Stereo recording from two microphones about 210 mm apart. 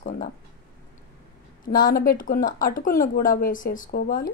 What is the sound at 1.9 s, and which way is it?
Speech, 45° left (ahead or behind).